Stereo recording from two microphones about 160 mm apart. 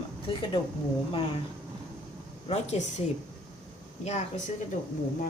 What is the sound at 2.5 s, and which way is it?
Speech, 45° left (ahead or behind).